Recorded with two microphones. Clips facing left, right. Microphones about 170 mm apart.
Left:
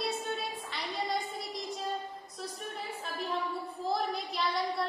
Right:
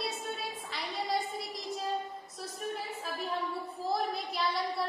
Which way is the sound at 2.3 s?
Centre (ahead or behind).